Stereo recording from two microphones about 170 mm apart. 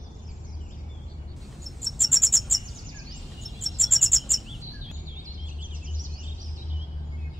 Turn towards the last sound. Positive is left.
turn(degrees=-50)  # may be behind; listen again after turning